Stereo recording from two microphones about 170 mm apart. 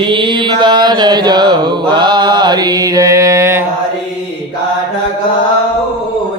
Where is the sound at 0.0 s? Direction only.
30° right (ahead or behind).